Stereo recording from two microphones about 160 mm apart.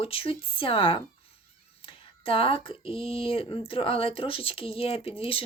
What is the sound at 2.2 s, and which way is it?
Speech, 35° left (ahead or behind).